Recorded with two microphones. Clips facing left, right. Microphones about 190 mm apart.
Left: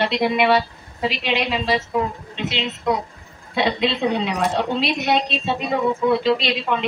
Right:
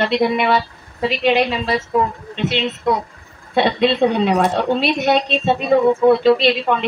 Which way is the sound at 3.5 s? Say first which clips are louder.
Right 5 dB; 50° right (ahead or behind).